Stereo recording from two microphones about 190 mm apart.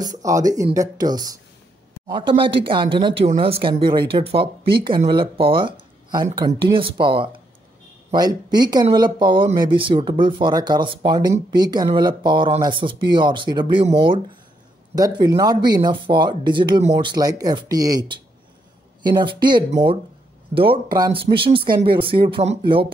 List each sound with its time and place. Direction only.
0.2 s speech: 15° right (ahead or behind)